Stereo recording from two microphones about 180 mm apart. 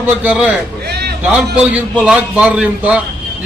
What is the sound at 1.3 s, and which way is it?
A man's voice, 5° right (ahead or behind).